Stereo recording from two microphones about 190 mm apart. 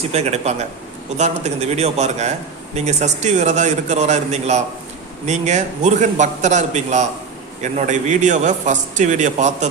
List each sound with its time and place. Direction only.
0.1 s a man's voice: 35° right (ahead or behind)